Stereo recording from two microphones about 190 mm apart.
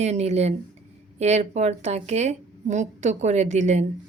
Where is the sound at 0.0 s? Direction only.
35° right (ahead or behind).